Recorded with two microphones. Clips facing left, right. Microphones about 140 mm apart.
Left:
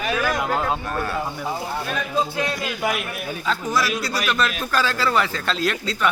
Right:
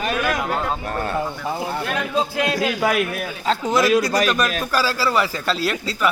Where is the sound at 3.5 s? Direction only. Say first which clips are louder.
Right 7 dB; 20° right (ahead or behind).